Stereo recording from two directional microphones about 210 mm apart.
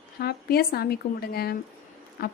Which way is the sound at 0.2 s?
45° left (ahead or behind).